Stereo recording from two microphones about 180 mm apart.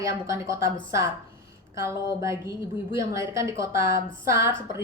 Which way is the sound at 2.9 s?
15° right (ahead or behind).